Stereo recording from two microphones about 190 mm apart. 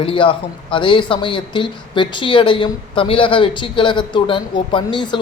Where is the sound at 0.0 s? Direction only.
25° left (ahead or behind).